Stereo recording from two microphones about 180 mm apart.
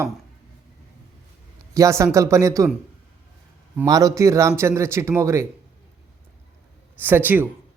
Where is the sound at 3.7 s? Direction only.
20° right (ahead or behind).